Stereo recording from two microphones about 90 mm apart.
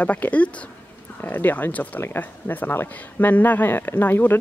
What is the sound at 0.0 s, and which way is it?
Speech, 15° left (ahead or behind).